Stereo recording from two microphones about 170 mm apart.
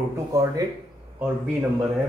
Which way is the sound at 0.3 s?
20° right (ahead or behind).